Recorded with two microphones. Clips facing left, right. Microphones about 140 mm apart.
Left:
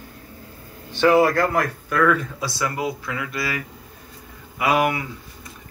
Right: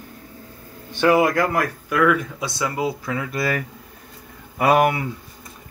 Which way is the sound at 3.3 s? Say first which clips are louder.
Right 4 dB; 45° right (ahead or behind).